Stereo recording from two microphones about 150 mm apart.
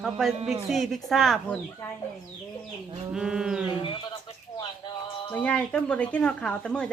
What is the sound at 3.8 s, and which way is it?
Speech, 35° left (ahead or behind).